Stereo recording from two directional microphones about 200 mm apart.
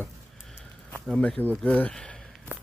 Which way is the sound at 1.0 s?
Centre (ahead or behind).